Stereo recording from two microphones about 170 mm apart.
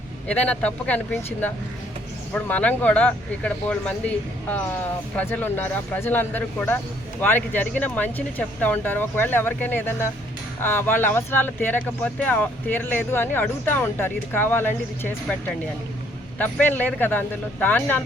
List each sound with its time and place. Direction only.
0.3 s speech: 5° left (ahead or behind)